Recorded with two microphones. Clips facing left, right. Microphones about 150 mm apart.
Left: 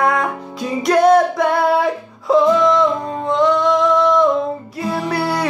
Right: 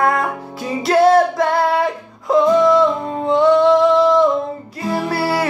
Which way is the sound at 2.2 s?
5° right (ahead or behind).